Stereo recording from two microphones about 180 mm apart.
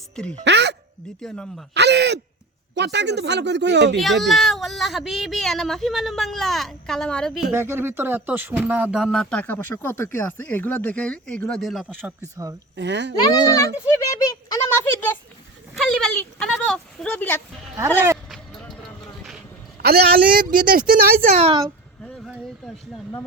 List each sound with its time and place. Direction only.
0.4 s speech: 75° right (ahead or behind)
1.2 s speech: centre (ahead or behind)
1.7 s speech: 70° right (ahead or behind)
3.9 s speech: centre (ahead or behind)
7.5 s speech: 15° right (ahead or behind)
11.9 s speech: 15° right (ahead or behind)
12.7 s speech: 75° right (ahead or behind)
13.7 s a sound: 20° left (ahead or behind)
15.8 s a sound: 5° left (ahead or behind)
18.3 s vehicle: centre (ahead or behind)
19.8 s speech: 60° right (ahead or behind); by 21.5 s 45° right (ahead or behind)